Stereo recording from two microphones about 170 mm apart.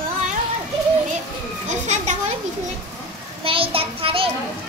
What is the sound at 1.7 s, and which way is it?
Children playing, 45° right (ahead or behind).